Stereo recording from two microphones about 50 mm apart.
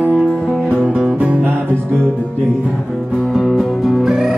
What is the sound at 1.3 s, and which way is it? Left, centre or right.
Music, right.